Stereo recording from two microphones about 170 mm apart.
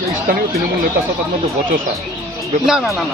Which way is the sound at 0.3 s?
55° right (ahead or behind).